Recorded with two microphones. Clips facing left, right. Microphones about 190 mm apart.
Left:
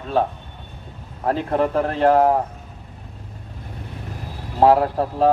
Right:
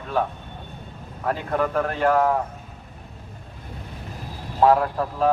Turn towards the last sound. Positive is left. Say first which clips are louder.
# left 4 dB
turn(degrees=30)  # may be behind; listen again after turning